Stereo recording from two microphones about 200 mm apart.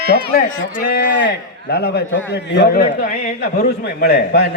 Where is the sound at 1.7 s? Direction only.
55° left (ahead or behind).